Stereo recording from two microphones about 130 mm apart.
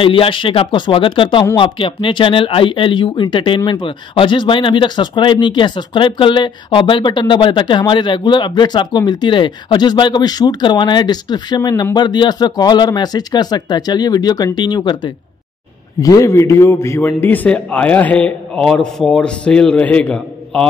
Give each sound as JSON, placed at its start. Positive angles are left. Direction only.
{"t": 0.0, "sound": "a man's voice", "side_deg": 45}